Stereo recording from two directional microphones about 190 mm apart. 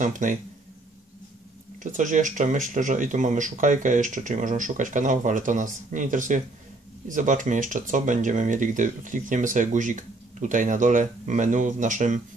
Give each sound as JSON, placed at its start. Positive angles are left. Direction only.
{"t": 0.0, "sound": "speech", "side_deg": -40}
{"t": 1.8, "sound": "speech", "side_deg": -40}